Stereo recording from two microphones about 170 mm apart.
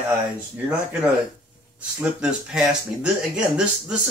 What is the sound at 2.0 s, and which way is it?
Speech, 5° right (ahead or behind).